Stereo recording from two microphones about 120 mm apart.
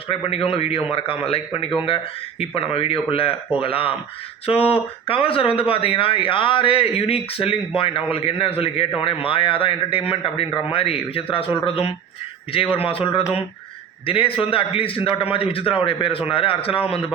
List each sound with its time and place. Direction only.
0.1 s speech: 50° left (ahead or behind)